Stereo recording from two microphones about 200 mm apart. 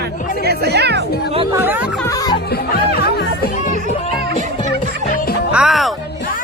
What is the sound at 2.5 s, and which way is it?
Music, 50° left (ahead or behind).